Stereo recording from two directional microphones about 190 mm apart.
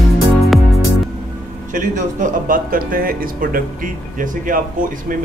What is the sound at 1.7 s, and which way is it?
A man's voice, 45° right (ahead or behind).